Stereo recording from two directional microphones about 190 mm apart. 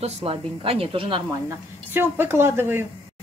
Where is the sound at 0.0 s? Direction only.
30° right (ahead or behind).